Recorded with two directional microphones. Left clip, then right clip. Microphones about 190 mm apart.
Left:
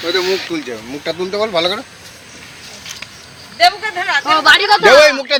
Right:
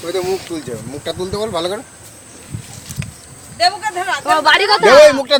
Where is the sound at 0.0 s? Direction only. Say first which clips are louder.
Left 3 dB; 10° right (ahead or behind).